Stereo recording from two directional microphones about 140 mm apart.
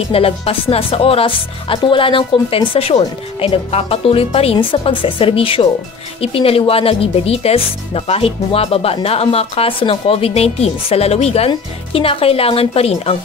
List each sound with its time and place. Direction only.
0.1 s speech: 45° left (ahead or behind)